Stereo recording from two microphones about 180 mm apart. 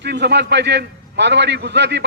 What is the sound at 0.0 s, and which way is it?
A man's voice, 70° right (ahead or behind).